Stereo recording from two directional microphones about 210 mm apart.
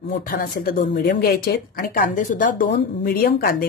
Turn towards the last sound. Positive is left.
turn(degrees=45)  # may be behind; listen again after turning